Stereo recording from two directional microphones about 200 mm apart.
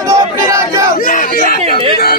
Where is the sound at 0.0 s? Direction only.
15° right (ahead or behind).